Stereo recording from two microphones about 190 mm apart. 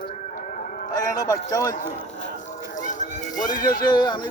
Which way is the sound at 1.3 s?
20° left (ahead or behind).